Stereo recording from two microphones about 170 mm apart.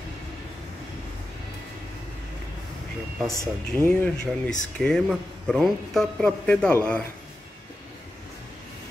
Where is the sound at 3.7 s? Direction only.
20° right (ahead or behind).